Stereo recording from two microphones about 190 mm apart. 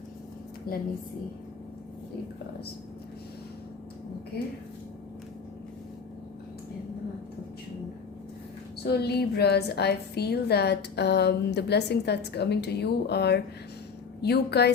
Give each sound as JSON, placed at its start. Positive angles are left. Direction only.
{"t": 0.7, "sound": "a woman's voice", "side_deg": 50}
{"t": 8.9, "sound": "a woman's voice", "side_deg": 60}